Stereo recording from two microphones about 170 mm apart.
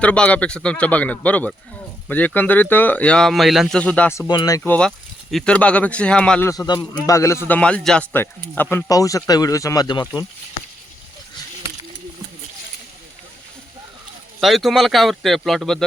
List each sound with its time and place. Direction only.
0.0 s speech: 5° left (ahead or behind)
4.3 s a man's voice: 20° left (ahead or behind)
4.7 s speech: 5° left (ahead or behind)
6.5 s a man's voice: 20° left (ahead or behind)
14.4 s speech: centre (ahead or behind)